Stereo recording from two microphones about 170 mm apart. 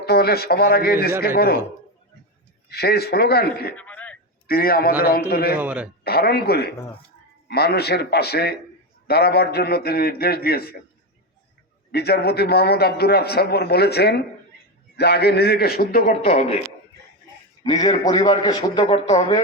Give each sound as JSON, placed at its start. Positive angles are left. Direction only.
{"t": 0.0, "sound": "a man's voice", "side_deg": 70}
{"t": 2.6, "sound": "a man's voice", "side_deg": 70}
{"t": 3.8, "sound": "throat clearing", "side_deg": 10}
{"t": 4.4, "sound": "a man's voice", "side_deg": 60}
{"t": 5.5, "sound": "speech", "side_deg": -10}
{"t": 6.1, "sound": "a man's voice", "side_deg": 65}
{"t": 11.9, "sound": "a man's voice", "side_deg": 70}
{"t": 16.2, "sound": "speech", "side_deg": 40}
{"t": 17.6, "sound": "a man's voice", "side_deg": 20}
{"t": 18.8, "sound": "speech", "side_deg": 40}